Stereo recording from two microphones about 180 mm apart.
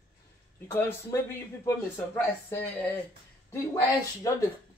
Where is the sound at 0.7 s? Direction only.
15° left (ahead or behind).